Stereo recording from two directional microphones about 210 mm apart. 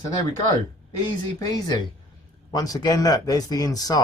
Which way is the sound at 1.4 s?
20° left (ahead or behind).